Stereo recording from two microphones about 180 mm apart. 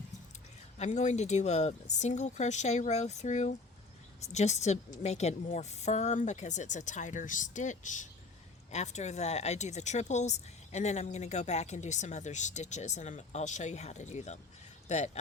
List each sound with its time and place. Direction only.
0.8 s speech: 40° left (ahead or behind)